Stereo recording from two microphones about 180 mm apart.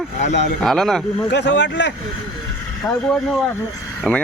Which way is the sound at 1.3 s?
80° left.